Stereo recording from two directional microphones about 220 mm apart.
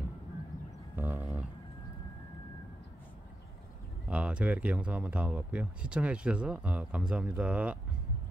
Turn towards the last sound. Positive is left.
turn(degrees=-5)  # may be behind; listen again after turning